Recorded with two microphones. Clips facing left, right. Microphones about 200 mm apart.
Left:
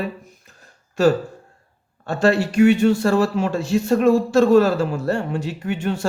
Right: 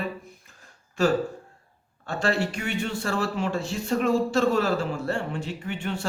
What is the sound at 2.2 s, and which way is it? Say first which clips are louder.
Speech: left 11 dB; 40° left (ahead or behind).